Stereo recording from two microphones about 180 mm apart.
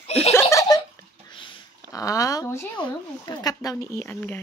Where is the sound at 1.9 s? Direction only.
20° left (ahead or behind).